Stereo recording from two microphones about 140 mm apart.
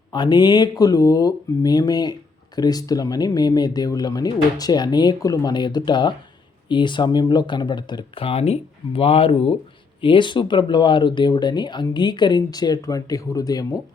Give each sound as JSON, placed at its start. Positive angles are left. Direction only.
{"t": 0.1, "sound": "speech", "side_deg": 30}